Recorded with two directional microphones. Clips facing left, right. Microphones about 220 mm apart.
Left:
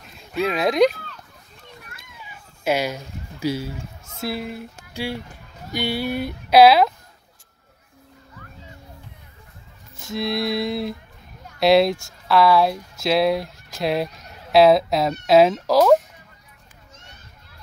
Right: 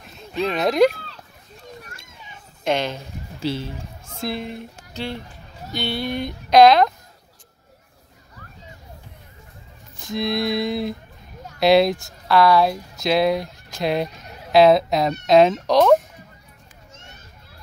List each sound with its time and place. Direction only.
0.3 s speech: 5° left (ahead or behind)
1.8 s children playing: 45° right (ahead or behind)
2.2 s a sound: 5° left (ahead or behind)
4.2 s speech: 5° left (ahead or behind)
10.0 s speech: centre (ahead or behind)